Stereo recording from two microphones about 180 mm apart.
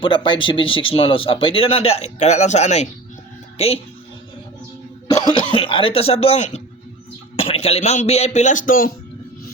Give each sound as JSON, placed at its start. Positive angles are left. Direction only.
{"t": 0.0, "sound": "speech", "side_deg": 25}
{"t": 5.1, "sound": "speech", "side_deg": 25}